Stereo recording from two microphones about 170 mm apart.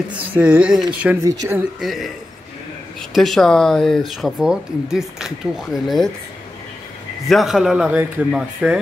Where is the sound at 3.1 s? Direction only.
Centre (ahead or behind).